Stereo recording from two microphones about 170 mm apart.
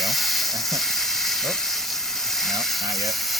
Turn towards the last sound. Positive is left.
turn(degrees=0)  # may be behind; listen again after turning